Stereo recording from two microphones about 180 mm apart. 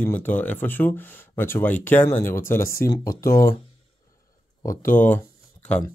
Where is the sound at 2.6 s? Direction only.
55° left (ahead or behind).